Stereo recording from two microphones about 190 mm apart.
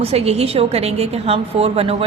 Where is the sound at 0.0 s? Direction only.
35° right (ahead or behind).